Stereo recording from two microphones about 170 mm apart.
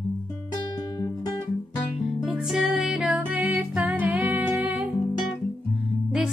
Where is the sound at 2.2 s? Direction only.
Centre (ahead or behind).